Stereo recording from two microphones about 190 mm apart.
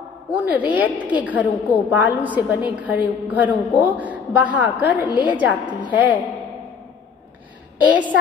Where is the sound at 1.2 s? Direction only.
10° right (ahead or behind).